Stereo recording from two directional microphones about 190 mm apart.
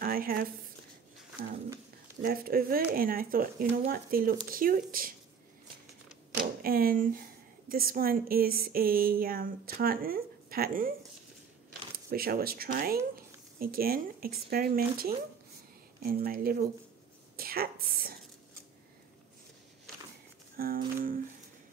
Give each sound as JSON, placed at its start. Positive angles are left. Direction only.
{"t": 0.0, "sound": "a sound", "side_deg": -50}
{"t": 2.2, "sound": "a woman's voice", "side_deg": -50}
{"t": 6.6, "sound": "a woman's voice", "side_deg": -50}
{"t": 12.1, "sound": "a woman's voice", "side_deg": -50}
{"t": 16.3, "sound": "a woman's voice", "side_deg": -50}
{"t": 20.5, "sound": "a woman's voice", "side_deg": -50}